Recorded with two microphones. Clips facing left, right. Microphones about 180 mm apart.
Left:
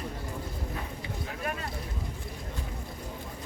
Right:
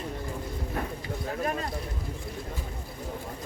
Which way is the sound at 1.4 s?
35° right (ahead or behind).